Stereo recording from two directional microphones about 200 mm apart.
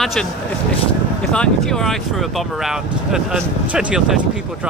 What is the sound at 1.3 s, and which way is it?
Speech, 5° left (ahead or behind).